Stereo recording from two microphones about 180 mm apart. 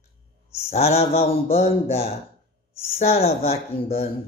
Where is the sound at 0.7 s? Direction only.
35° left (ahead or behind).